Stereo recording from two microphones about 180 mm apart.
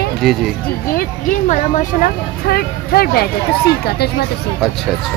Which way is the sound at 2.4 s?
60° left (ahead or behind).